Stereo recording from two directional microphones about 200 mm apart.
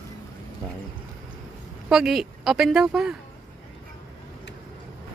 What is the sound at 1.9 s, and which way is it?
A woman's voice, centre (ahead or behind).